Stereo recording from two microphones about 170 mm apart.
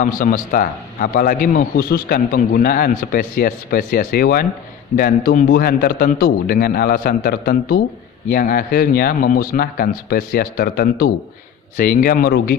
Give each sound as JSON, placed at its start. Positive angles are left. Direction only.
{"t": 0.0, "sound": "a man's voice", "side_deg": 50}